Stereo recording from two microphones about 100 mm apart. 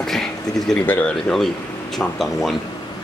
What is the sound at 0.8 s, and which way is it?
Speech, 20° left (ahead or behind).